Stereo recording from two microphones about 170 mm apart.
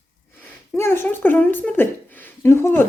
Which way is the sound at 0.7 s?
15° left (ahead or behind).